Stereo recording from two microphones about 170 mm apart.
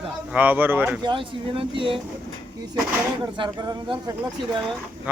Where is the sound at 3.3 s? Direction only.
25° right (ahead or behind).